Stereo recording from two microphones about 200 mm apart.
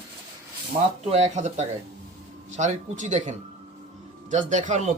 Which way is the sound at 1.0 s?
35° right (ahead or behind).